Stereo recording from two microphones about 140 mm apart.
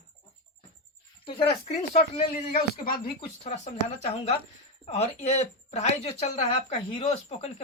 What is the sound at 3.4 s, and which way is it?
Speech, 50° left (ahead or behind).